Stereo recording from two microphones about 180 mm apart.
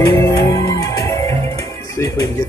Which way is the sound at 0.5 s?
20° left (ahead or behind).